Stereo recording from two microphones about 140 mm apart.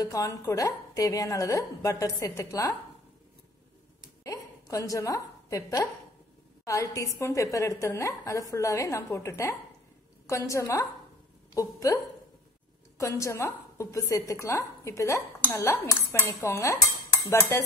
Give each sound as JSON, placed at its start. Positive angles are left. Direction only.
{"t": 0.0, "sound": "a woman's voice", "side_deg": 25}
{"t": 4.2, "sound": "a sound", "side_deg": 25}
{"t": 6.6, "sound": "a woman's voice", "side_deg": 25}